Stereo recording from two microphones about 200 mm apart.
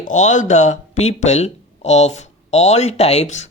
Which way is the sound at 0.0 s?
35° left (ahead or behind).